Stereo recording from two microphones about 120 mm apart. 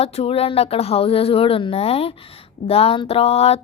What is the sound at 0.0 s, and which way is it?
Speech, 60° left (ahead or behind).